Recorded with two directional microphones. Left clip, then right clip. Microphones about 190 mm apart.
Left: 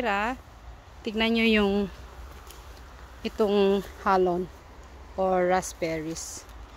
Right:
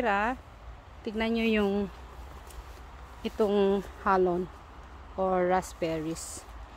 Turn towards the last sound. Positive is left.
turn(degrees=-5)  # may be behind; listen again after turning